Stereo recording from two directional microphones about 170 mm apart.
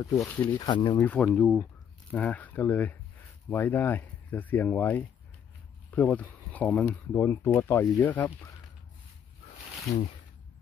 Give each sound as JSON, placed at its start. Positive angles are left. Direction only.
{"t": 0.0, "sound": "speech", "side_deg": 20}
{"t": 0.6, "sound": "speech", "side_deg": 25}
{"t": 0.9, "sound": "speech", "side_deg": 10}